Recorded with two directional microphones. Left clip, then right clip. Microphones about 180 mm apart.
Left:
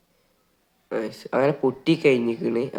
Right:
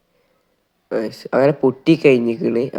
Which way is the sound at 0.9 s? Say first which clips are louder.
Right 6 dB; 25° right (ahead or behind).